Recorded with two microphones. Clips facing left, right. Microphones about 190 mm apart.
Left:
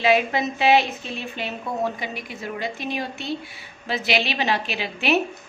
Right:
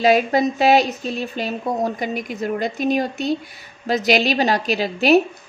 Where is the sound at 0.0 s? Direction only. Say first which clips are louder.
Right 4 dB; 40° right (ahead or behind).